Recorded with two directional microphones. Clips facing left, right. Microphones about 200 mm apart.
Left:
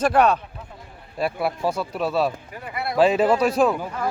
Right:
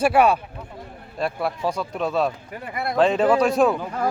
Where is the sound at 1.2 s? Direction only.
5° left (ahead or behind).